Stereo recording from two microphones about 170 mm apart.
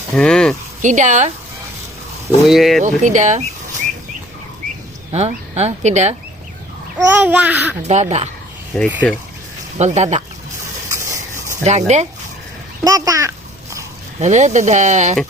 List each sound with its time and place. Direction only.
0.1 s speech: 5° left (ahead or behind)
0.8 s speech: 45° right (ahead or behind)
2.5 s speech: centre (ahead or behind)
2.8 s speech: 45° right (ahead or behind)
5.1 s speech: 40° right (ahead or behind)
7.1 s babbling: 10° right (ahead or behind)
7.8 s speech: 40° right (ahead or behind)
8.7 s speech: 5° left (ahead or behind)
9.7 s speech: 40° right (ahead or behind)
10.8 s a sound: 20° right (ahead or behind)
11.6 s speech: 40° right (ahead or behind)
12.8 s a child's voice: 20° right (ahead or behind)
14.2 s speech: 45° right (ahead or behind)